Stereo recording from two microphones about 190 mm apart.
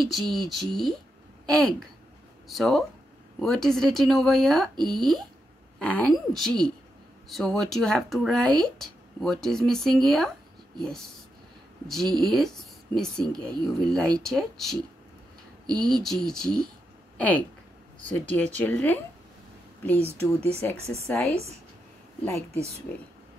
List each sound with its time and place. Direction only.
0.0 s speech: centre (ahead or behind)
11.9 s speech: centre (ahead or behind)
15.8 s speech: centre (ahead or behind)
20.3 s speech: 30° right (ahead or behind)
21.1 s speech: 15° left (ahead or behind)